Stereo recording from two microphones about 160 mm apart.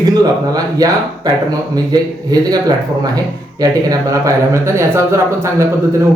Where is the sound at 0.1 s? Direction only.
25° right (ahead or behind).